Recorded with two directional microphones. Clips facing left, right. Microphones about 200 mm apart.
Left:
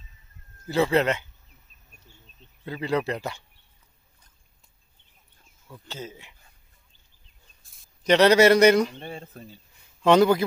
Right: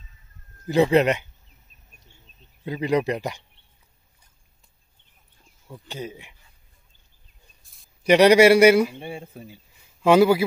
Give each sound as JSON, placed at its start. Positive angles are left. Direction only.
{"t": 0.7, "sound": "a man's voice", "side_deg": -15}
{"t": 2.6, "sound": "a man's voice", "side_deg": -15}
{"t": 5.7, "sound": "a man's voice", "side_deg": -15}
{"t": 7.6, "sound": "a sound", "side_deg": 0}
{"t": 8.1, "sound": "a man's voice", "side_deg": -10}